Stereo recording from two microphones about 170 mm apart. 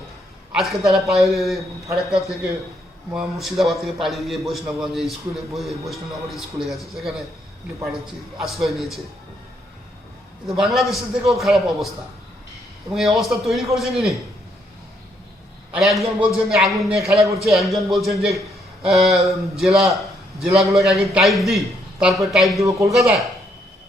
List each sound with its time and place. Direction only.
0.5 s a man's voice: centre (ahead or behind)
8.4 s a man's voice: centre (ahead or behind)
10.4 s a man's voice: centre (ahead or behind)
15.7 s a man's voice: centre (ahead or behind)